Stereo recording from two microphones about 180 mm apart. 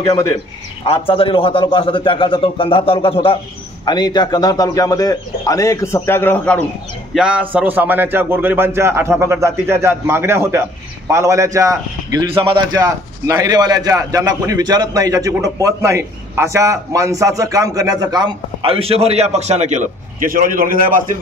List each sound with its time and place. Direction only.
0.8 s a man's voice: 30° left (ahead or behind); by 6.6 s 10° left (ahead or behind)
7.2 s a man's voice: 5° right (ahead or behind); by 21.0 s 50° right (ahead or behind)